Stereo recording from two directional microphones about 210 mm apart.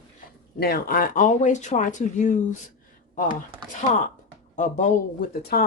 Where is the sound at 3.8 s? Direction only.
35° left (ahead or behind).